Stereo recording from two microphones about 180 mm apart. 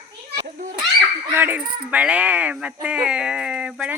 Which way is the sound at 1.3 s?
10° right (ahead or behind).